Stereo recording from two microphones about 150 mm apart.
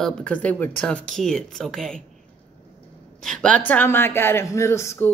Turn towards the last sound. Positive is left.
turn(degrees=20)  # may be behind; listen again after turning